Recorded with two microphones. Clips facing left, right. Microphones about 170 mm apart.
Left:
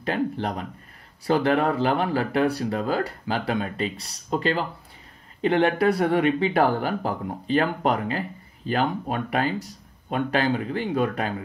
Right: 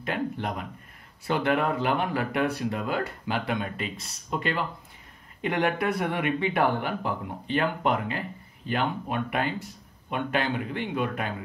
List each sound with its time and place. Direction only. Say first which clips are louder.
0.0 s speech: left 4 dB; 35° left (ahead or behind)